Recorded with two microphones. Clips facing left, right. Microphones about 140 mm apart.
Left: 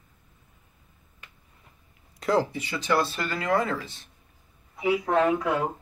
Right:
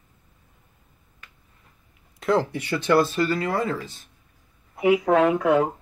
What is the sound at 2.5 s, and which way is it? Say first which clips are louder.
Speech: right 5 dB; 60° right (ahead or behind).